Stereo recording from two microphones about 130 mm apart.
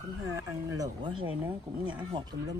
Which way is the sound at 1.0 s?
40° right (ahead or behind).